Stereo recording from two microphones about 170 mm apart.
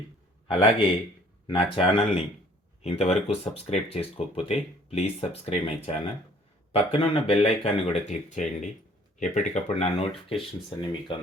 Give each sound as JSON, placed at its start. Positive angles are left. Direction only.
{"t": 0.4, "sound": "a man's voice", "side_deg": 30}
{"t": 10.2, "sound": "speech", "side_deg": 30}